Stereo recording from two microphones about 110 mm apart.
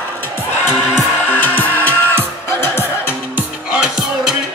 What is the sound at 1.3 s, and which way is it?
Music, 20° left (ahead or behind).